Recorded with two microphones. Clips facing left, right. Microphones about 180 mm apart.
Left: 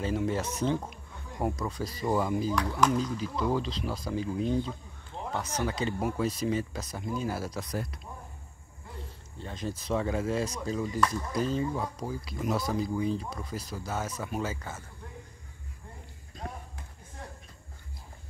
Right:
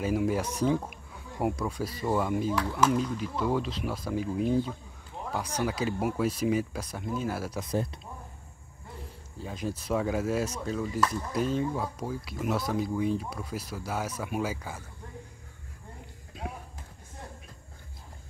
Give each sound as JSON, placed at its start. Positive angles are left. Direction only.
{"t": 0.0, "sound": "speech", "side_deg": -10}
{"t": 7.7, "sound": "speech", "side_deg": -25}
{"t": 9.4, "sound": "speech", "side_deg": -5}
{"t": 16.4, "sound": "run", "side_deg": -5}